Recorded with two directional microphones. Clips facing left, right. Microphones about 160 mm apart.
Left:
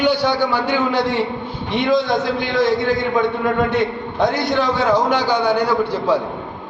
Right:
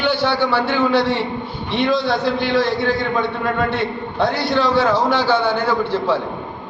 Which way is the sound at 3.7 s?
15° left (ahead or behind).